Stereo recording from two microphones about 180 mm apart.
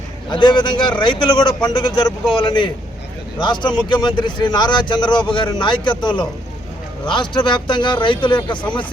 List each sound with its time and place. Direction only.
0.3 s speech: 25° left (ahead or behind)